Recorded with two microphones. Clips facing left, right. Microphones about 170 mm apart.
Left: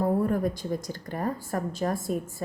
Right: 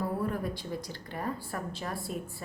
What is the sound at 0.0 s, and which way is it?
Speech, 45° left (ahead or behind).